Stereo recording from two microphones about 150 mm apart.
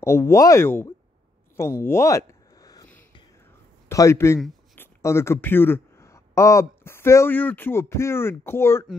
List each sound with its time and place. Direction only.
0.0 s speech: 15° left (ahead or behind)
1.6 s a sound: 15° left (ahead or behind)
3.9 s a man's voice: 20° left (ahead or behind)